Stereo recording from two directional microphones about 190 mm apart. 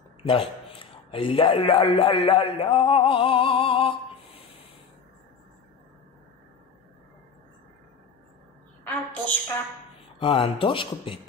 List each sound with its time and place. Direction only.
0.2 s a man's voice: 30° left (ahead or behind)
8.8 s a sound: 10° left (ahead or behind)
10.1 s speech: 25° left (ahead or behind)